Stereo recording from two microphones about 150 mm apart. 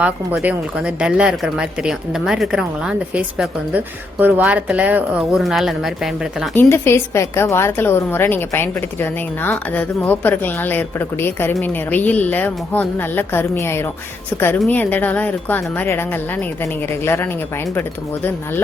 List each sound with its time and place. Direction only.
0.0 s speech: 10° right (ahead or behind)
6.5 s a woman's voice: 15° left (ahead or behind)